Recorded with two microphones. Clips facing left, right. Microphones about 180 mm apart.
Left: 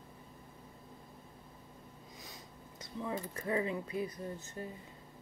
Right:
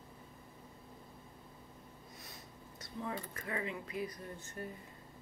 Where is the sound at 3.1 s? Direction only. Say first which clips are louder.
Left 6 dB; 30° left (ahead or behind).